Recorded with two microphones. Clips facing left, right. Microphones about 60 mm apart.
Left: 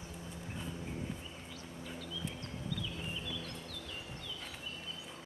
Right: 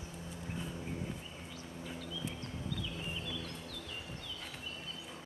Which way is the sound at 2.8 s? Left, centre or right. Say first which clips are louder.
Even; centre.